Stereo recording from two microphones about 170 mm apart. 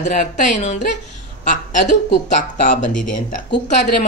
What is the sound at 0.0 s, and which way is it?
A woman's voice, 45° left (ahead or behind).